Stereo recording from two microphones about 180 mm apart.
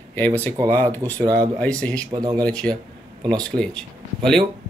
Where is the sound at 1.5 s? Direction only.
5° left (ahead or behind).